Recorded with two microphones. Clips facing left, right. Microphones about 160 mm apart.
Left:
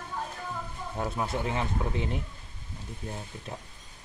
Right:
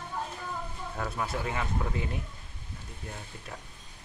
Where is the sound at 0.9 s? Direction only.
20° left (ahead or behind).